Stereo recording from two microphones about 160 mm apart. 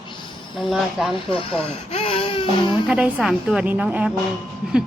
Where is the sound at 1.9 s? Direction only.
35° left (ahead or behind).